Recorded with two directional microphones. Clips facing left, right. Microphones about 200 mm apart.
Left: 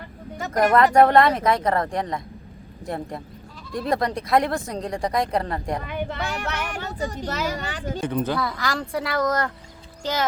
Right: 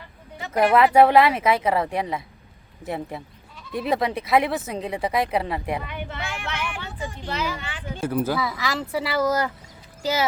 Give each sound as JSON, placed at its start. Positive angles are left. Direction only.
{"t": 0.9, "sound": "speech", "side_deg": -5}
{"t": 5.8, "sound": "speech", "side_deg": 40}
{"t": 8.0, "sound": "speech", "side_deg": -5}